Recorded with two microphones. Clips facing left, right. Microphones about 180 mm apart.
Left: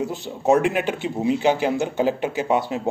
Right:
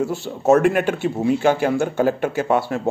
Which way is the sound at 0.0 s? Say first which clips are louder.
Right 4 dB; 20° left (ahead or behind).